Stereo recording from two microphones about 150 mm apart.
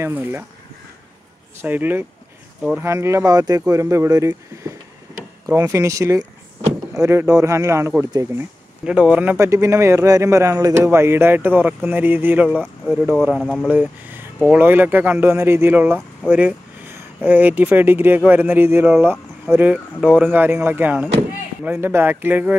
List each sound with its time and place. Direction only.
0.0 s speech: 15° right (ahead or behind)
1.6 s speech: 10° right (ahead or behind)
8.8 s speech: 10° right (ahead or behind)
13.4 s speech: 5° left (ahead or behind)
13.7 s speech: 10° right (ahead or behind)